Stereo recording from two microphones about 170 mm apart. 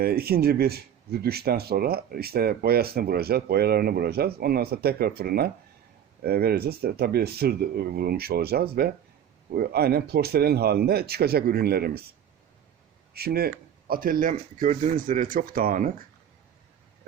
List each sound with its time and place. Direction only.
0.0 s speech: 65° right (ahead or behind)
13.1 s speech: 65° right (ahead or behind)